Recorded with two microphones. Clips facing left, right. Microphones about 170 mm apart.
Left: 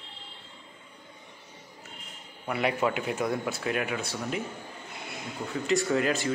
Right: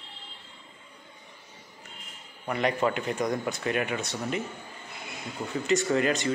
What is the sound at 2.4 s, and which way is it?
Speech, 5° left (ahead or behind).